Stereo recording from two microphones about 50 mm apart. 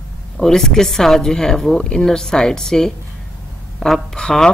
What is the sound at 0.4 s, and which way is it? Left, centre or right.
Speech, centre.